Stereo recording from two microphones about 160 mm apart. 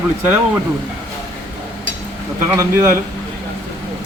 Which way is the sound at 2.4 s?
15° right (ahead or behind).